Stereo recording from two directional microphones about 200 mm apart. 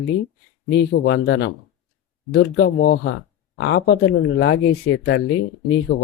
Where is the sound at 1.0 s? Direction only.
55° left (ahead or behind).